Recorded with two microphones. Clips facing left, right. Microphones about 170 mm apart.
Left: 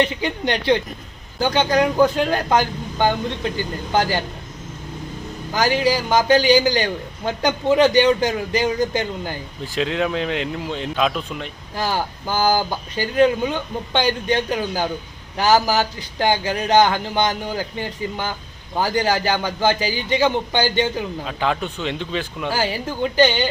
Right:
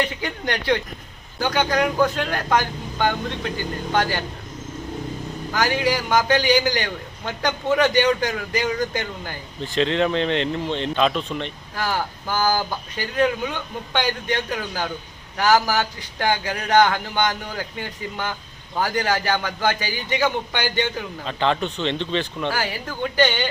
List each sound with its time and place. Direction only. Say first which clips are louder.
0.0 s speech: left 4 dB; 25° left (ahead or behind)
5.5 s a man's voice: left 3 dB; 30° left (ahead or behind)
9.7 s speech: right 1 dB; 5° left (ahead or behind)
11.8 s speech: left 2 dB; 25° left (ahead or behind)
21.2 s speech: right 3 dB; 5° left (ahead or behind)
22.5 s speech: left 4 dB; 25° left (ahead or behind)